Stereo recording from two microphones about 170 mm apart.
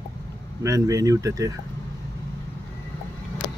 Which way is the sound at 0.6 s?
20° right (ahead or behind).